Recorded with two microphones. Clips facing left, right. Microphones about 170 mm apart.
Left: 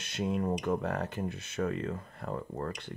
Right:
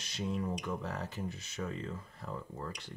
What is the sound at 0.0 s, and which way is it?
Speech, 55° left (ahead or behind).